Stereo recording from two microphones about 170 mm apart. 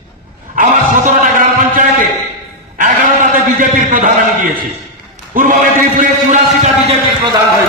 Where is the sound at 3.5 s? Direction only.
50° right (ahead or behind).